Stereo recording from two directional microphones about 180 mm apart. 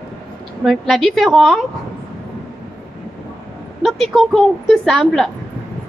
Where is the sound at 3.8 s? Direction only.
Centre (ahead or behind).